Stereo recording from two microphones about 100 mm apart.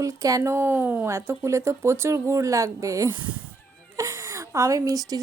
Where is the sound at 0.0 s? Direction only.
35° right (ahead or behind).